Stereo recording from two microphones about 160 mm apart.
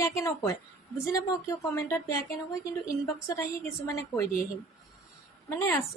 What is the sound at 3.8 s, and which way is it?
Speech, 20° left (ahead or behind).